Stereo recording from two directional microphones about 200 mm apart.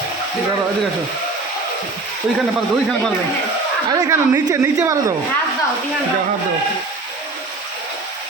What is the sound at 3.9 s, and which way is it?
A woman's voice, 20° right (ahead or behind).